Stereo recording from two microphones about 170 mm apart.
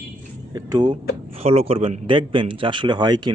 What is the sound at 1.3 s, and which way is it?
Speech, 35° right (ahead or behind).